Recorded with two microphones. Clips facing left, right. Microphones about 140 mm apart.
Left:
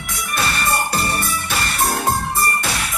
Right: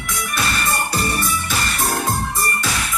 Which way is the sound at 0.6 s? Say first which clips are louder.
Left 1 dB; 55° left (ahead or behind).